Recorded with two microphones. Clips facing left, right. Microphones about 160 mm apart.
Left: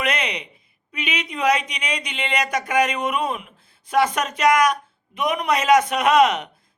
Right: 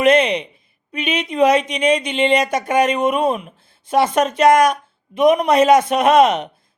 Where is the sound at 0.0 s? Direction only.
25° right (ahead or behind).